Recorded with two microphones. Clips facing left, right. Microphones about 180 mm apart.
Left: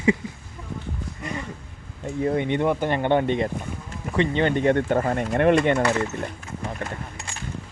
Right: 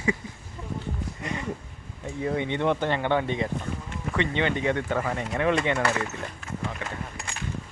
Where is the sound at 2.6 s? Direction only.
10° left (ahead or behind).